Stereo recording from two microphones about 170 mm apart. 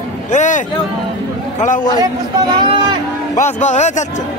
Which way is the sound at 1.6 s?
50° left (ahead or behind).